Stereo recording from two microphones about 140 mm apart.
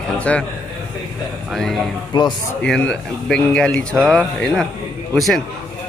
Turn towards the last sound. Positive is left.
turn(degrees=0)  # may be behind; listen again after turning